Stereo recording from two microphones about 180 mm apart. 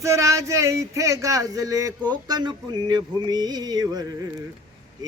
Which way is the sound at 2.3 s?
25° right (ahead or behind).